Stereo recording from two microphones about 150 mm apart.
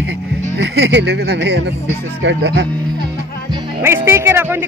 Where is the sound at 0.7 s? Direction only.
90° right.